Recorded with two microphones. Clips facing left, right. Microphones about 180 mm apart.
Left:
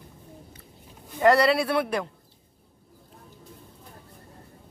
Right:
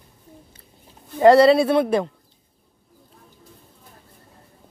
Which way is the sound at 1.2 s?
25° right (ahead or behind).